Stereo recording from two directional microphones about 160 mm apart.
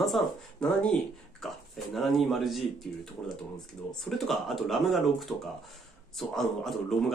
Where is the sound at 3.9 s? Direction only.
Centre (ahead or behind).